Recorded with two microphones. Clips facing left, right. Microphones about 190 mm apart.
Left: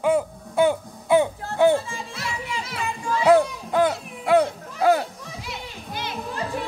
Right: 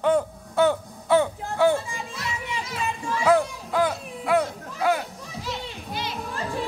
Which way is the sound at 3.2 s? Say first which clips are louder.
Left 4 dB; 25° left (ahead or behind).